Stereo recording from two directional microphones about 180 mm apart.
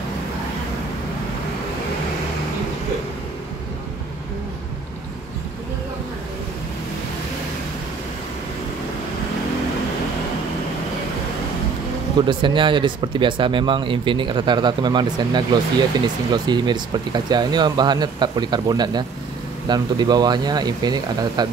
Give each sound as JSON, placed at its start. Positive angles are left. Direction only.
{"t": 12.2, "sound": "speech", "side_deg": -25}